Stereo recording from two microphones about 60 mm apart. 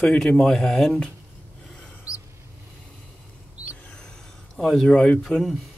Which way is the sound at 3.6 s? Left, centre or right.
Right.